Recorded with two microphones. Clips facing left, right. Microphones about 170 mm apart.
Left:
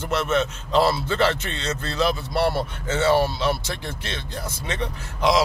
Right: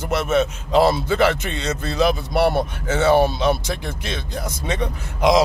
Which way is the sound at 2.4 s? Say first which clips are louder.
Right 4 dB; 60° right (ahead or behind).